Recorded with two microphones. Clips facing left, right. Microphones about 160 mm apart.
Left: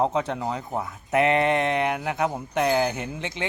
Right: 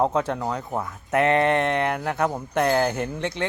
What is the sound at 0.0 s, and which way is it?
Speech, centre (ahead or behind).